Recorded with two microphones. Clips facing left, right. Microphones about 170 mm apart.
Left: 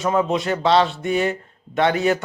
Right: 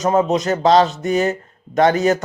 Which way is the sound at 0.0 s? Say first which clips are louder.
Right 4 dB; 40° right (ahead or behind).